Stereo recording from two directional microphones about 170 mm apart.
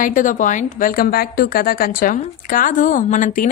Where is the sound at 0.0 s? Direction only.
50° left (ahead or behind).